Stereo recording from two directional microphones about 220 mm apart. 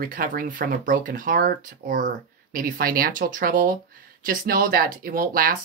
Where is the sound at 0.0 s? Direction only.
40° right (ahead or behind).